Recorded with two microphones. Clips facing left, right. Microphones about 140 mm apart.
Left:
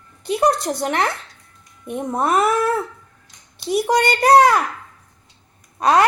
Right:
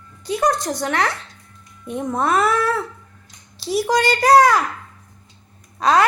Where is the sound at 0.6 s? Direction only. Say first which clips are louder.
Left 1 dB; 30° left (ahead or behind).